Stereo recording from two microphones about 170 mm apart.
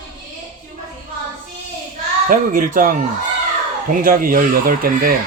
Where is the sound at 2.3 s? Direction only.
55° right (ahead or behind).